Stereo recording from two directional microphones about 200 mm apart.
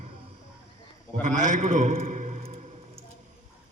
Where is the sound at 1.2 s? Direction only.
40° right (ahead or behind).